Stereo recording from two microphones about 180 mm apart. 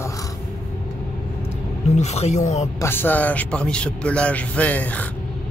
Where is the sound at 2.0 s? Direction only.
40° left (ahead or behind).